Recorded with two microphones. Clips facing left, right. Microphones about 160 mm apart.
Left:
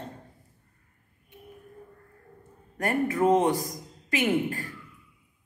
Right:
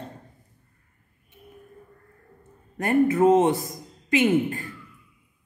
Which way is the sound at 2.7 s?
25° right (ahead or behind).